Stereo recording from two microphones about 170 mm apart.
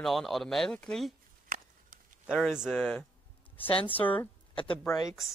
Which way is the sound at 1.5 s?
50° right (ahead or behind).